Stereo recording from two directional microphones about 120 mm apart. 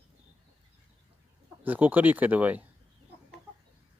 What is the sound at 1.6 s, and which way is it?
Speech, 15° right (ahead or behind).